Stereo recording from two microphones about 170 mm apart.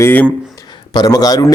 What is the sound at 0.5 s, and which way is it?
Speech, 25° left (ahead or behind).